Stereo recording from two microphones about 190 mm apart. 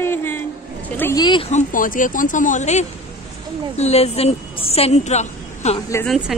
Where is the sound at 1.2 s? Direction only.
25° left (ahead or behind).